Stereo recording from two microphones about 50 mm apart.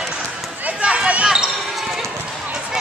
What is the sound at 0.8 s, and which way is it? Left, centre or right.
Basketball bounce, right.